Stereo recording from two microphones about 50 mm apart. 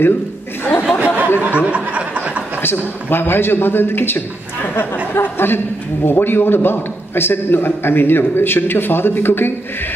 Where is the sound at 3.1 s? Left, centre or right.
Left.